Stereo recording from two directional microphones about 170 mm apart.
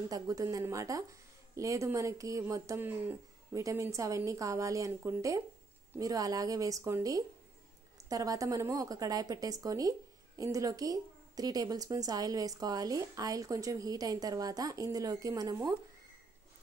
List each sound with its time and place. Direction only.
0.1 s a woman's voice: 20° right (ahead or behind)